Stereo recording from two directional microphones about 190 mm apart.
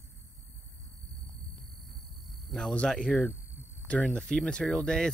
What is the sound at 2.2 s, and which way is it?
Speech, centre (ahead or behind).